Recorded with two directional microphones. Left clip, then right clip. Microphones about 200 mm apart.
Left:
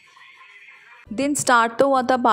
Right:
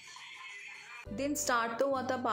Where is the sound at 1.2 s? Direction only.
55° left (ahead or behind).